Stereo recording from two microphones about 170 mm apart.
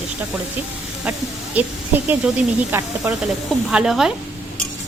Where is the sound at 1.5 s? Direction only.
10° right (ahead or behind).